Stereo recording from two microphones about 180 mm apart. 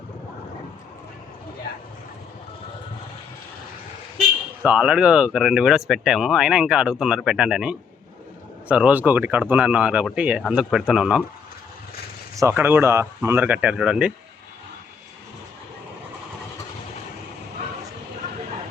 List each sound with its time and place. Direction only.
4.6 s speech: 10° right (ahead or behind)
12.4 s speech: 15° right (ahead or behind)